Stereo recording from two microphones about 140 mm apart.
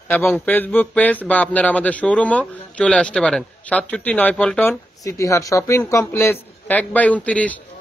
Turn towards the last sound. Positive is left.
turn(degrees=10)  # may be behind; listen again after turning